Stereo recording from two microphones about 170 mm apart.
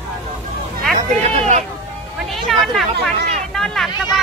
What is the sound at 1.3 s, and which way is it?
Run, 40° right (ahead or behind).